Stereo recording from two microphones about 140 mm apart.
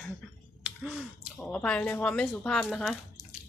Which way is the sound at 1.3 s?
5° left (ahead or behind).